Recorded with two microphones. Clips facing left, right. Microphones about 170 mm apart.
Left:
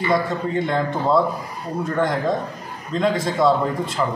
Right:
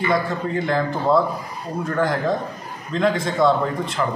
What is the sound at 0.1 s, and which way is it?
Speech, centre (ahead or behind).